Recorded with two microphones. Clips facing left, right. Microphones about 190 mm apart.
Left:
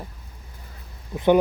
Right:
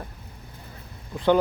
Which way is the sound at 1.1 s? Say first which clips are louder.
Left 2 dB; 20° left (ahead or behind).